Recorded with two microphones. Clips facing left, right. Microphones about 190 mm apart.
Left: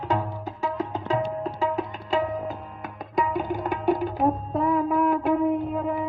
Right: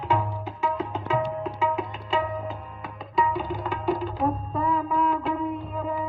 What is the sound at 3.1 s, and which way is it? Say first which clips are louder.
Tabla: left 1 dB; 45° left (ahead or behind).